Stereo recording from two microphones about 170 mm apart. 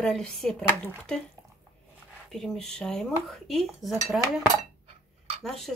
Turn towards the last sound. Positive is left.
turn(degrees=0)  # may be behind; listen again after turning